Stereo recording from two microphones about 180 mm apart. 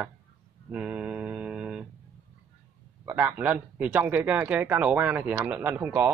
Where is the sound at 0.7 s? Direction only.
5° right (ahead or behind).